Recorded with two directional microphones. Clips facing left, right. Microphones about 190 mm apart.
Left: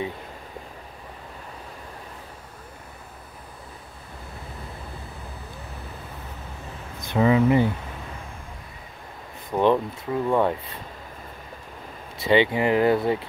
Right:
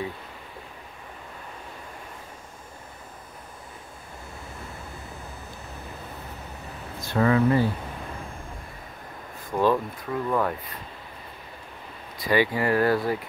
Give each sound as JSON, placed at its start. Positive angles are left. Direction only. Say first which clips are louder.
{"t": 7.0, "sound": "speech", "louder": "left 2 dB", "side_deg": 15}
{"t": 9.5, "sound": "speech", "louder": "left 2 dB", "side_deg": 20}
{"t": 12.2, "sound": "speech", "louder": "left 3 dB", "side_deg": 25}